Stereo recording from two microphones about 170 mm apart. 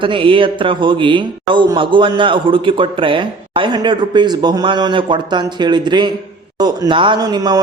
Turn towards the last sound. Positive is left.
turn(degrees=-25)  # may be behind; listen again after turning